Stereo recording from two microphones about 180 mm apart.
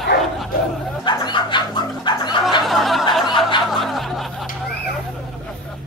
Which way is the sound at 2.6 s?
Centre (ahead or behind).